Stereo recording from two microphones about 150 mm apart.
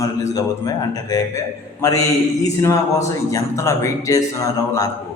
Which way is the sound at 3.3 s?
20° left (ahead or behind).